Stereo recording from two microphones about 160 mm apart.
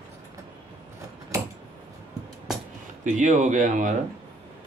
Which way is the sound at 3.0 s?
50° right (ahead or behind).